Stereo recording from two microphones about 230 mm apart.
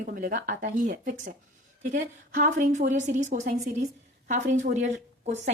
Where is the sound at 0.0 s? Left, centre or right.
Right.